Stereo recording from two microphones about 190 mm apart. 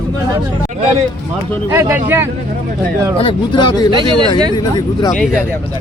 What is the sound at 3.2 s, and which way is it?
Speech, 25° left (ahead or behind).